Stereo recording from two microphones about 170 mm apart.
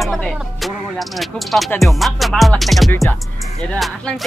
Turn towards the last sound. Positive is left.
turn(degrees=0)  # may be behind; listen again after turning